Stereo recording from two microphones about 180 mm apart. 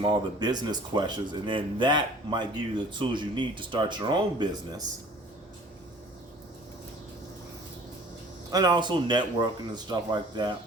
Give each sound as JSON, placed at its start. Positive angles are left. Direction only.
{"t": 0.0, "sound": "speech", "side_deg": -25}
{"t": 8.4, "sound": "speech", "side_deg": -20}